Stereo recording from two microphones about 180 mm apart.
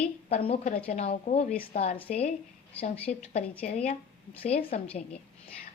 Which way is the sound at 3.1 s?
45° left (ahead or behind).